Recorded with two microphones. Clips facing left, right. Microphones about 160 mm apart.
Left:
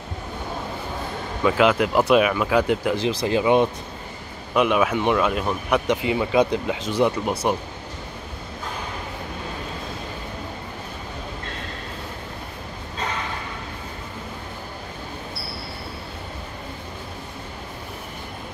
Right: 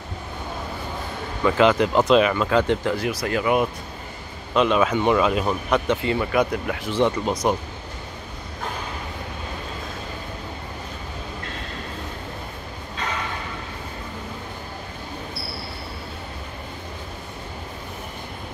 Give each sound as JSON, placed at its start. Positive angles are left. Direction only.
{"t": 1.4, "sound": "speech", "side_deg": 5}
{"t": 3.0, "sound": "speech", "side_deg": 25}
{"t": 4.6, "sound": "speech", "side_deg": 10}
{"t": 5.7, "sound": "speech", "side_deg": 15}